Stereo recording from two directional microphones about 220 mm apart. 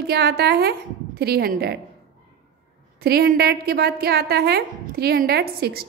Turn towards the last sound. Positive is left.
turn(degrees=-45)  # may be behind; listen again after turning